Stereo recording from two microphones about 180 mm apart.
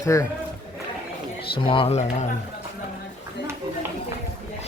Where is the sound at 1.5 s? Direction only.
30° left (ahead or behind).